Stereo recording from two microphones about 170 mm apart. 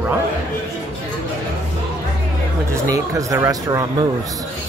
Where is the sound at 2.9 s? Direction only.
20° right (ahead or behind).